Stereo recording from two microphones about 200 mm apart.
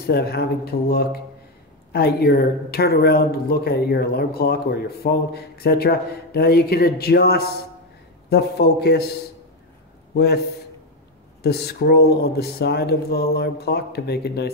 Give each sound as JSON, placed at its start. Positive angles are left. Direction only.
{"t": 0.0, "sound": "speech", "side_deg": 50}
{"t": 10.1, "sound": "speech", "side_deg": 55}
{"t": 11.4, "sound": "speech", "side_deg": 55}